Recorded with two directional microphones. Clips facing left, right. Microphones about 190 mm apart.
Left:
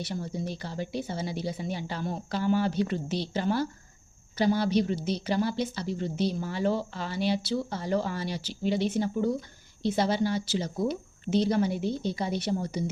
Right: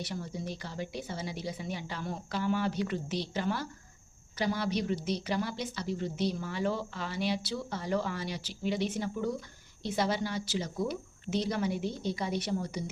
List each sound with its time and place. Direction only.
0.0 s speech: 30° left (ahead or behind)